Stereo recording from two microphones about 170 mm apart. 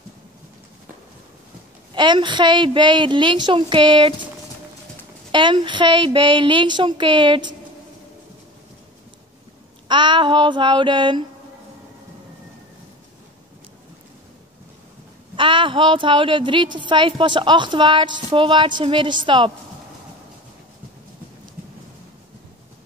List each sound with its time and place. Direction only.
2.0 s a woman's voice: 25° right (ahead or behind)
5.3 s a woman's voice: 30° right (ahead or behind)
9.8 s a woman's voice: 25° right (ahead or behind)
15.3 s a woman's voice: 30° right (ahead or behind)